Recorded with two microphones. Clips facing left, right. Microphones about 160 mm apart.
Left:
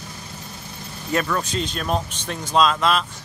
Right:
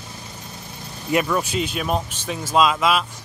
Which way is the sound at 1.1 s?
10° right (ahead or behind).